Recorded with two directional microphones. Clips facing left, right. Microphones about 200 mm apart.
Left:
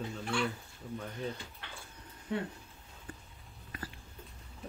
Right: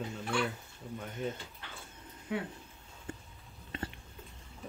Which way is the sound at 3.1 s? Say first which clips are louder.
Right 5 dB; 25° right (ahead or behind).